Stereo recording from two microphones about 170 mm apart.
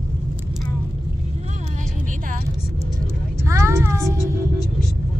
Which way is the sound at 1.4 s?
40° right (ahead or behind).